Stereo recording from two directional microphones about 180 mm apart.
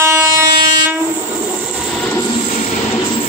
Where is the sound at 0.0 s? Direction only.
15° right (ahead or behind).